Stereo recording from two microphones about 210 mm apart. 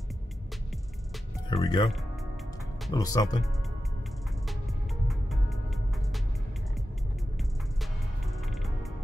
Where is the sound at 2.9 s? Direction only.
15° left (ahead or behind).